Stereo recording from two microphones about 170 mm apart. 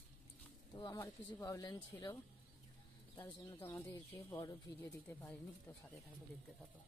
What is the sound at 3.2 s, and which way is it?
Speech, 15° left (ahead or behind).